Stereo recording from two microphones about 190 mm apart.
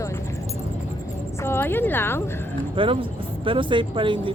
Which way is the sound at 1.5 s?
10° left (ahead or behind).